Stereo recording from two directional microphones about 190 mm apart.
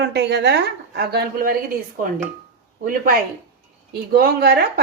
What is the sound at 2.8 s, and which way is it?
Speech, 45° right (ahead or behind).